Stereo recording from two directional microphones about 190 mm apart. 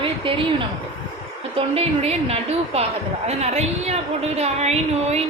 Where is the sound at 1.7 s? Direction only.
30° right (ahead or behind).